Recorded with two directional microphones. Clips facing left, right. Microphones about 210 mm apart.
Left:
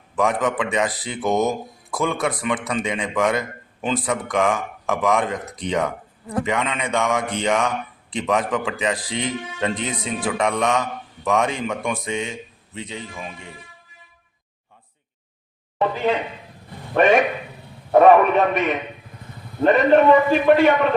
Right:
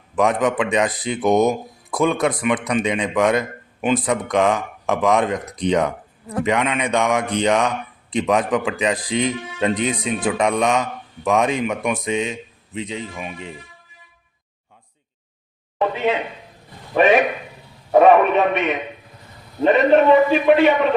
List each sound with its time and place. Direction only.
0.2 s speech: 20° right (ahead or behind)
16.9 s a man's voice: 5° right (ahead or behind)